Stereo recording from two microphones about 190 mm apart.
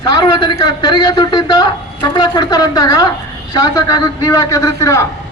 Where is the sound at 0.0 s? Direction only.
20° left (ahead or behind).